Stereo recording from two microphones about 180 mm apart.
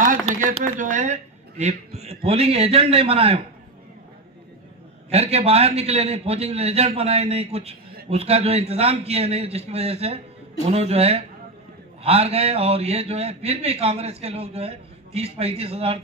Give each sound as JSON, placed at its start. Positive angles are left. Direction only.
{"t": 0.3, "sound": "a man's voice", "side_deg": -40}
{"t": 5.1, "sound": "a man's voice", "side_deg": -35}